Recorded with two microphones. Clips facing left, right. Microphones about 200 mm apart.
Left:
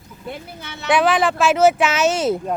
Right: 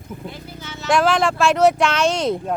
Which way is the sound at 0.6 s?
60° left (ahead or behind).